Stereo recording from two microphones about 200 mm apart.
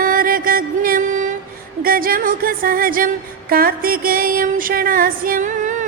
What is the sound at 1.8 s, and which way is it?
Music, 45° right (ahead or behind).